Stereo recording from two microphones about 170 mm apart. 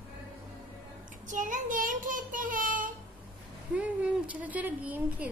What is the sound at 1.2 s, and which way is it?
Child singing, 50° right (ahead or behind).